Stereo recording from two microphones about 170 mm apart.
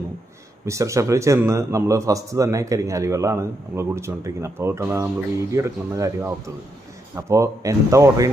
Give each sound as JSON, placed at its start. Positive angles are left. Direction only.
{"t": 0.6, "sound": "a man's voice", "side_deg": -15}